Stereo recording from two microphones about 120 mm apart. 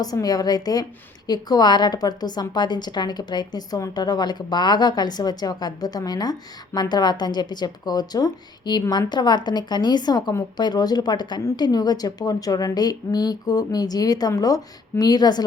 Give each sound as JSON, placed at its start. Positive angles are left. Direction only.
{"t": 0.0, "sound": "a woman's voice", "side_deg": 30}